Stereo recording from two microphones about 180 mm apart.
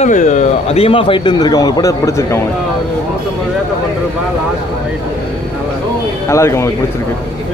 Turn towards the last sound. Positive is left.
turn(degrees=15)  # may be behind; listen again after turning